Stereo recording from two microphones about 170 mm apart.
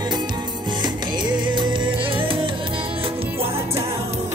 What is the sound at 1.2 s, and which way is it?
Music, 30° right (ahead or behind).